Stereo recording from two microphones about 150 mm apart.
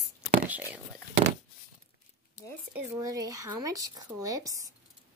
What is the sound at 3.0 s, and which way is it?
Speech, 25° right (ahead or behind).